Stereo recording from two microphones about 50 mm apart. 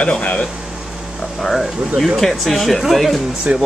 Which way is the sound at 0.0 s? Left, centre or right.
Left.